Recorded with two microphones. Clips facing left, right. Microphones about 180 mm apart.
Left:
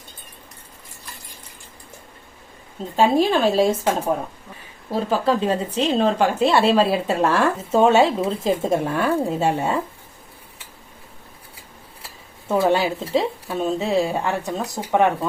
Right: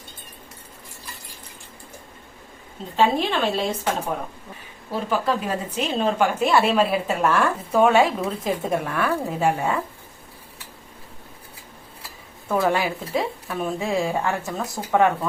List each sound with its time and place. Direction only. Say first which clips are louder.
2.9 s a woman's voice: left 4 dB; 40° left (ahead or behind)
4.9 s speech: left 3 dB; 35° left (ahead or behind)
12.5 s speech: left 3 dB; 25° left (ahead or behind)